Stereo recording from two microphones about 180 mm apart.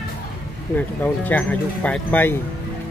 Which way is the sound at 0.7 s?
10° left (ahead or behind).